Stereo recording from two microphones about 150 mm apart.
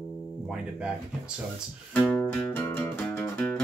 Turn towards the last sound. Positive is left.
turn(degrees=10)  # may be behind; listen again after turning